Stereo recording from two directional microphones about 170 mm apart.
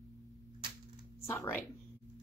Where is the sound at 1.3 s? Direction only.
10° left (ahead or behind).